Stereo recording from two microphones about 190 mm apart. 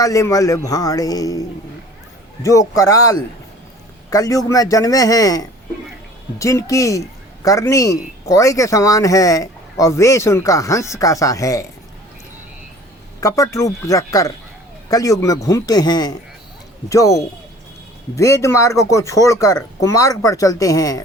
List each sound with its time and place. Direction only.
0.0 s a man's voice: 15° left (ahead or behind)
13.1 s a man's voice: 15° left (ahead or behind)